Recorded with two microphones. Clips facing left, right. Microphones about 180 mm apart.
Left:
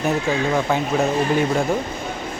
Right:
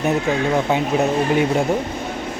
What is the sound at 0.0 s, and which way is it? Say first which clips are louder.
Speech: right 2 dB; 20° right (ahead or behind).